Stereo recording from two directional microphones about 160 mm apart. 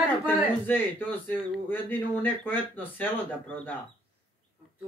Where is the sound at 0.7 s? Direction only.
10° left (ahead or behind).